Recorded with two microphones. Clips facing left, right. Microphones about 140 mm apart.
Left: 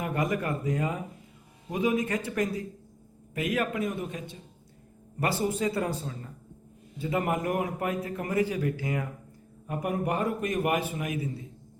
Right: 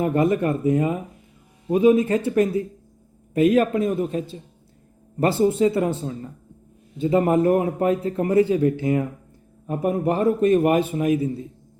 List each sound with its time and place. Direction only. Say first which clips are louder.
0.0 s a man's voice: right 9 dB; 30° right (ahead or behind)